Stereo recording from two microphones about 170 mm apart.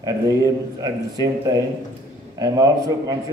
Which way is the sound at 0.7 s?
20° right (ahead or behind).